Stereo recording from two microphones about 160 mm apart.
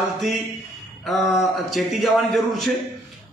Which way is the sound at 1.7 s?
Centre (ahead or behind).